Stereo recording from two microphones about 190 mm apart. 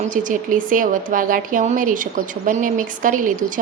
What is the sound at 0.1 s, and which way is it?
A woman's voice, 45° right (ahead or behind).